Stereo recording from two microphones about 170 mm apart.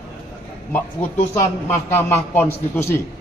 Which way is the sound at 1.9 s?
10° left (ahead or behind).